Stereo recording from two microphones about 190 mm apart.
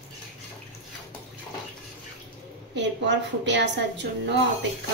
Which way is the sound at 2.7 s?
70° right (ahead or behind).